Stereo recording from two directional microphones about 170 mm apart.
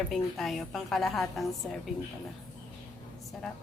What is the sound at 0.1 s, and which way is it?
A woman's voice, centre (ahead or behind).